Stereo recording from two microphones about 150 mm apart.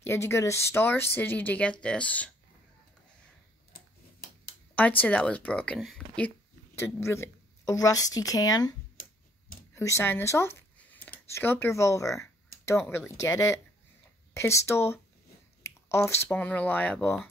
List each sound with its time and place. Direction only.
0.0 s speech: 15° left (ahead or behind)
5.0 s speech: 10° left (ahead or behind); by 8.7 s 25° left (ahead or behind)
9.8 s speech: 20° left (ahead or behind)